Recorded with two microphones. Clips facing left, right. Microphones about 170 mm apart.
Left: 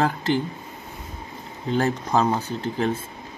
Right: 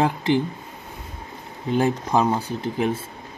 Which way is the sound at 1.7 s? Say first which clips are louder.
Right 2 dB; 15° right (ahead or behind).